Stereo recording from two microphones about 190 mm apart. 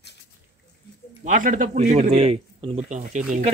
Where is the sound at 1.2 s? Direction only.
45° right (ahead or behind).